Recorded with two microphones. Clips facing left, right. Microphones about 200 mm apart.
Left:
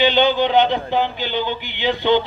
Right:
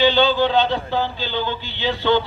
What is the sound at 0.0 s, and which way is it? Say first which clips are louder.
A man's voice: even; 20° left (ahead or behind).